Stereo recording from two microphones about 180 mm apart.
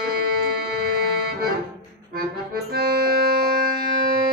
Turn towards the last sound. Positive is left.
turn(degrees=-60)  # may be behind; listen again after turning